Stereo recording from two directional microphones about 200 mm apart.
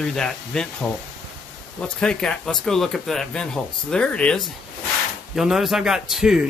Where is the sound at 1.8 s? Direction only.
5° left (ahead or behind).